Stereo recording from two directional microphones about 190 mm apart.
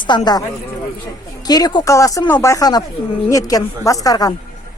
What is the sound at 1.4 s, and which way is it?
A woman's voice, 20° left (ahead or behind).